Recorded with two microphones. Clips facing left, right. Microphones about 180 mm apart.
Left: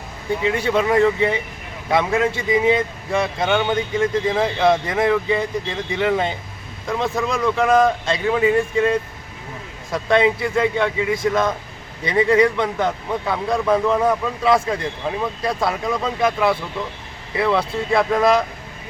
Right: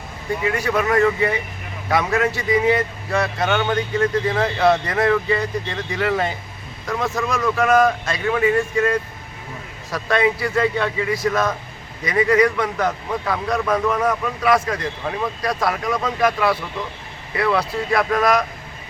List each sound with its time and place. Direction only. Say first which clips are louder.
0.4 s a man's voice: left 2 dB; 25° left (ahead or behind)